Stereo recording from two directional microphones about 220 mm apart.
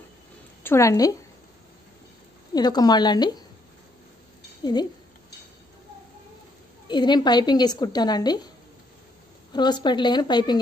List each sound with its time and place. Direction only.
0.7 s a woman's voice: 15° left (ahead or behind)
2.5 s a woman's voice: 20° left (ahead or behind)
6.9 s a woman's voice: 20° left (ahead or behind)
9.5 s a woman's voice: 20° left (ahead or behind)